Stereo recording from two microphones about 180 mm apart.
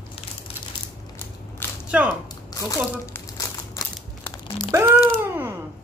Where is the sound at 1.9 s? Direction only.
5° right (ahead or behind).